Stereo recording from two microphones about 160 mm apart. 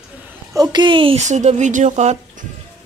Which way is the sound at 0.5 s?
25° right (ahead or behind).